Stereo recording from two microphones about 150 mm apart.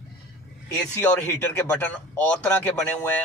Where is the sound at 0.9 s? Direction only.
15° left (ahead or behind).